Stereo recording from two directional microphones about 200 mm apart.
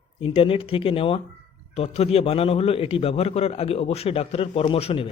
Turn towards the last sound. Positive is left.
turn(degrees=30)  # may be behind; listen again after turning